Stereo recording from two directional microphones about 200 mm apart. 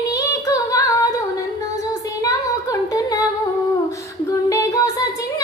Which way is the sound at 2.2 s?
15° left (ahead or behind).